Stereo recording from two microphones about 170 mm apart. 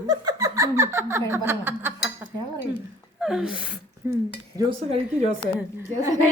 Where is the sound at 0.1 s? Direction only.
20° right (ahead or behind).